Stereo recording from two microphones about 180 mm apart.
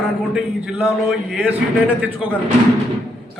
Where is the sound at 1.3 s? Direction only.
10° right (ahead or behind).